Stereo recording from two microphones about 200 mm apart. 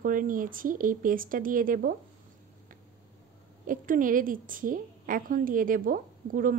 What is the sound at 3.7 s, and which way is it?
A woman's voice, 45° right (ahead or behind).